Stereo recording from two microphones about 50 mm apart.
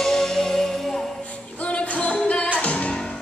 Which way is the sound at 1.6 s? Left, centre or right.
Left.